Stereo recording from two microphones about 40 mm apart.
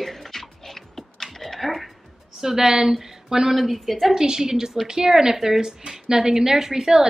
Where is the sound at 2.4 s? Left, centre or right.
Centre.